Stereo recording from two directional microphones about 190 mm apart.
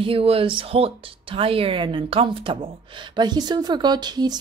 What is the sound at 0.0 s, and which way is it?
A woman's voice, 30° right (ahead or behind).